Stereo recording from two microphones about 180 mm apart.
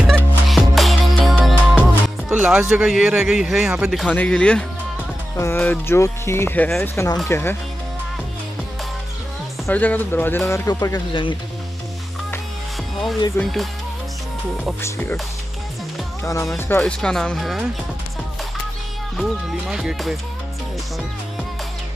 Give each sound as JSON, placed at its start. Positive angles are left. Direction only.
{"t": 0.0, "sound": "music", "side_deg": 0}
{"t": 2.2, "sound": "speech", "side_deg": -5}
{"t": 9.7, "sound": "speech", "side_deg": 10}
{"t": 13.4, "sound": "speech", "side_deg": 0}
{"t": 14.8, "sound": "speech", "side_deg": 10}
{"t": 16.5, "sound": "speech", "side_deg": 10}
{"t": 19.1, "sound": "speech", "side_deg": 0}